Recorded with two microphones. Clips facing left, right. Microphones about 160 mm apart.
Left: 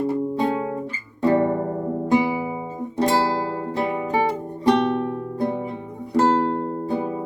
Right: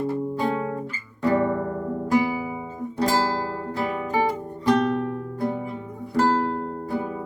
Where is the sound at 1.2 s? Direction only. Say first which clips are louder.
Left 3 dB; 25° left (ahead or behind).